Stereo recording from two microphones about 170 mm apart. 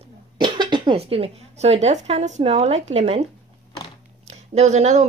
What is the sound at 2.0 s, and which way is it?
Speech, 40° right (ahead or behind).